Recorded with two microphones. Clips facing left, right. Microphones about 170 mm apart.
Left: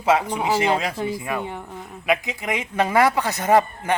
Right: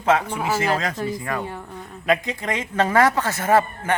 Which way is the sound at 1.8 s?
5° left (ahead or behind).